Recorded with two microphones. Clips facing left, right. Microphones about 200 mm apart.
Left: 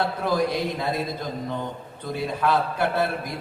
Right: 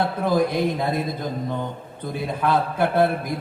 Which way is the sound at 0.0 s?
55° right (ahead or behind).